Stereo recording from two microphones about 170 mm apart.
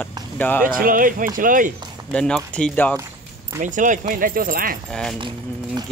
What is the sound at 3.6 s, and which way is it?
Speech, 50° right (ahead or behind).